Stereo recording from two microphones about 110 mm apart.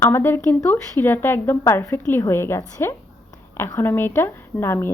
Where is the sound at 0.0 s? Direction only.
20° left (ahead or behind).